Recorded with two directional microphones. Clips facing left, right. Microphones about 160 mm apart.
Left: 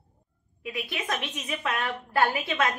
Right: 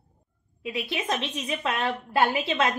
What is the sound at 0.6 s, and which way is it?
A woman's voice, 20° right (ahead or behind).